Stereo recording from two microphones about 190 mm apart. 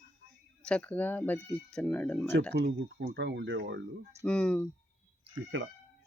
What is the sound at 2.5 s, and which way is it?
Speech, 65° right (ahead or behind).